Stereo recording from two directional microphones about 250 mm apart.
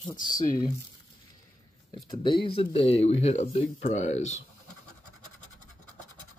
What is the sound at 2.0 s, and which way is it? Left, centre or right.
Speech, centre.